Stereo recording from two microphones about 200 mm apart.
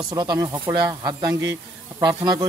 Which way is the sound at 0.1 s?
20° right (ahead or behind).